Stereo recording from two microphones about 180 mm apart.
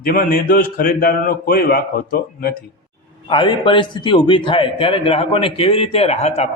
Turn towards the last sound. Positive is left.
turn(degrees=35)  # may be behind; listen again after turning